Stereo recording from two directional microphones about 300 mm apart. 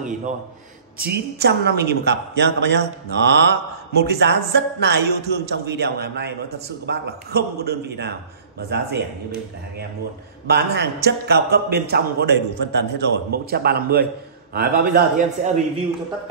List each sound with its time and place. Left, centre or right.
0.0 s a man's voice: right
10.4 s a woman's voice: right